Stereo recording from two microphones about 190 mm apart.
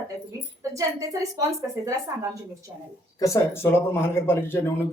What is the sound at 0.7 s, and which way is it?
A woman's voice, 20° right (ahead or behind).